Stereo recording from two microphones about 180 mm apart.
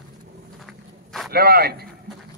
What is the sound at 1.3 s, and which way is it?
Speech, 60° right (ahead or behind).